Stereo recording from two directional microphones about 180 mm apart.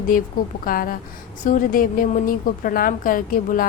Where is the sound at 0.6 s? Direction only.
50° left (ahead or behind).